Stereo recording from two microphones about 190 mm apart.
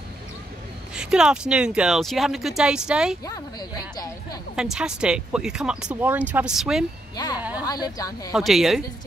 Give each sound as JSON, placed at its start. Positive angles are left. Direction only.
{"t": 0.9, "sound": "speech", "side_deg": -5}
{"t": 3.3, "sound": "speech", "side_deg": 20}
{"t": 4.6, "sound": "speech", "side_deg": -5}
{"t": 7.3, "sound": "a sound", "side_deg": -10}
{"t": 7.6, "sound": "speech", "side_deg": 20}
{"t": 8.3, "sound": "speech", "side_deg": 0}